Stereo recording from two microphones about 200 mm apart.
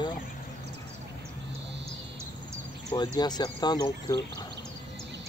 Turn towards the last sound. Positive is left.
turn(degrees=20)  # may be behind; listen again after turning